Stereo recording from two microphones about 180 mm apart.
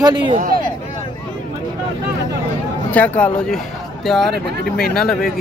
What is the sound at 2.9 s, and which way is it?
Speech, 10° left (ahead or behind).